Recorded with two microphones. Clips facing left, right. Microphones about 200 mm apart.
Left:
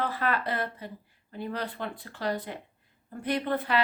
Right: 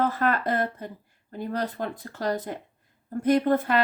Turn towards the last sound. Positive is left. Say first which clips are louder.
# right 5 dB
turn(degrees=-45)  # may be behind; listen again after turning